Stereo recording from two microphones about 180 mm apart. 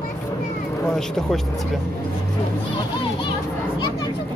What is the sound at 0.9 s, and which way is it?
Speech, 5° left (ahead or behind).